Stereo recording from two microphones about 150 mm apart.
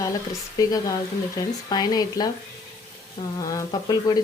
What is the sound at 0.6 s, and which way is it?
Speech, 25° left (ahead or behind).